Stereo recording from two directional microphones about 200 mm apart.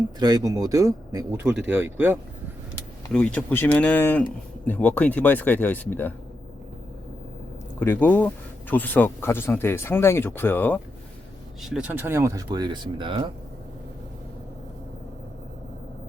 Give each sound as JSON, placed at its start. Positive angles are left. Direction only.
{"t": 0.2, "sound": "speech", "side_deg": -20}
{"t": 3.1, "sound": "speech", "side_deg": 5}
{"t": 7.8, "sound": "speech", "side_deg": 10}
{"t": 11.7, "sound": "speech", "side_deg": -10}